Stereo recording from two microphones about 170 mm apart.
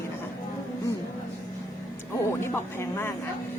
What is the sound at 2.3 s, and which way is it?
Speech, 15° left (ahead or behind).